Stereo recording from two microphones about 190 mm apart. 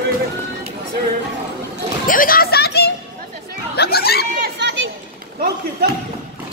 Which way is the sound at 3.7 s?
55° left (ahead or behind).